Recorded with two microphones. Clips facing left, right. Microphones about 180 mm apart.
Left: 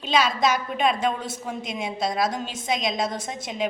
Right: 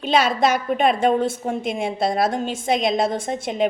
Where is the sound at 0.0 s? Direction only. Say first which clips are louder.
Right 4 dB; 55° right (ahead or behind).